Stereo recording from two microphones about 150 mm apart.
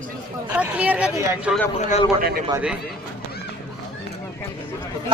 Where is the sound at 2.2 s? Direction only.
75° right (ahead or behind).